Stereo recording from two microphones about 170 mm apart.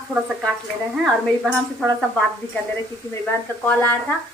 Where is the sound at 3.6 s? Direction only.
10° left (ahead or behind).